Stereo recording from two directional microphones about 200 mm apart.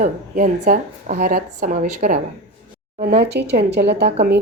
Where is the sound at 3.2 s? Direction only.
55° right (ahead or behind).